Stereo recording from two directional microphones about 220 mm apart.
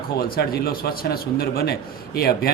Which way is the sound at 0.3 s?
45° left (ahead or behind).